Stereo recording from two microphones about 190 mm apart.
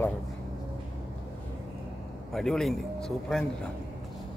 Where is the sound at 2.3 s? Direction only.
Centre (ahead or behind).